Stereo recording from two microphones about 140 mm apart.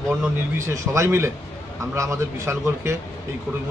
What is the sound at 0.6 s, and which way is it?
Speech, 20° right (ahead or behind).